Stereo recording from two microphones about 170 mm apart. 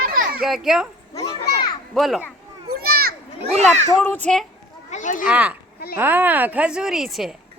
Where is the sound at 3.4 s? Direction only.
40° right (ahead or behind).